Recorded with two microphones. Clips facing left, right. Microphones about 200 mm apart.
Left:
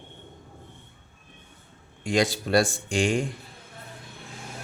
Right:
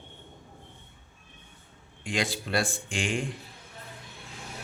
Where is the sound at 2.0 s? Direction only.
40° left (ahead or behind).